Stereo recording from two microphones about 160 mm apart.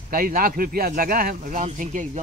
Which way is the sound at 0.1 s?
65° right (ahead or behind).